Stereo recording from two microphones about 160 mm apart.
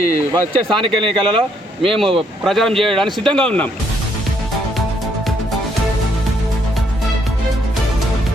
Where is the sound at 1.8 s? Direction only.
Centre (ahead or behind).